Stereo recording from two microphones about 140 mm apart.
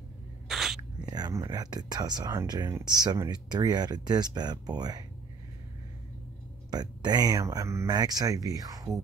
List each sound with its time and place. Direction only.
0.5 s a sound: centre (ahead or behind)
1.0 s speech: 30° right (ahead or behind)
6.7 s speech: 30° right (ahead or behind)